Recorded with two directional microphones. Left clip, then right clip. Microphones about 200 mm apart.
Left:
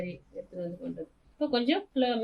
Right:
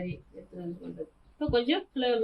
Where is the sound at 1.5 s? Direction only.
25° left (ahead or behind).